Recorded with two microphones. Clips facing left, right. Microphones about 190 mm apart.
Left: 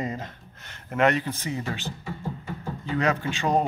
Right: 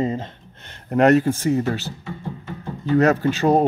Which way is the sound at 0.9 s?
40° right (ahead or behind).